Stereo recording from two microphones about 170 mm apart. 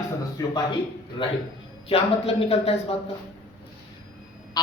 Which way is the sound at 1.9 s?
35° left (ahead or behind).